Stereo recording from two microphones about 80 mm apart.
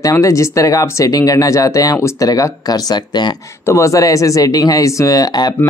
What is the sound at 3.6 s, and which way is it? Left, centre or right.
Speech, left.